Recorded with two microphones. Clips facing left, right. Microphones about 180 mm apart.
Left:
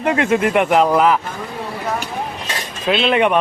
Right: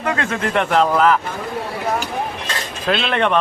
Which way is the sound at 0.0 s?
20° left (ahead or behind).